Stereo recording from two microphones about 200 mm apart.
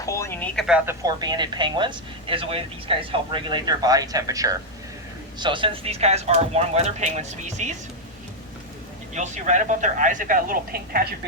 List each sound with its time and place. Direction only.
0.0 s speech: 15° left (ahead or behind)
1.0 s speech: 20° right (ahead or behind); by 7.7 s 35° right (ahead or behind)
9.1 s speech: 35° right (ahead or behind)